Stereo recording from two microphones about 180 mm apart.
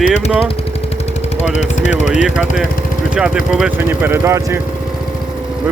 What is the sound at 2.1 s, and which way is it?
Speech, 5° right (ahead or behind).